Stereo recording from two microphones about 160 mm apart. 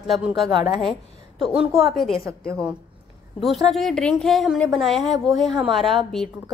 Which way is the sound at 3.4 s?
Centre (ahead or behind).